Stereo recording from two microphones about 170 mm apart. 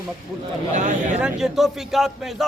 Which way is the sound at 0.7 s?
45° right (ahead or behind).